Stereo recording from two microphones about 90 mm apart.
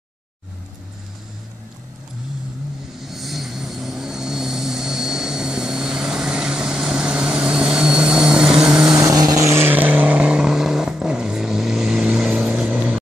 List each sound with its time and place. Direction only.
3.0 s vehicle: centre (ahead or behind)
9.0 s vehicle: 40° right (ahead or behind)
9.7 s vehicle: 20° right (ahead or behind)